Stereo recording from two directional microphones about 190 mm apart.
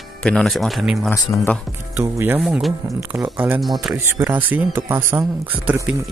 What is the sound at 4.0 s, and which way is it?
Speech, 10° right (ahead or behind).